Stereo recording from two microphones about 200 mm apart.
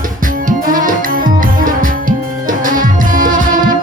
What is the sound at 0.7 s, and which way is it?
Music, 45° right (ahead or behind).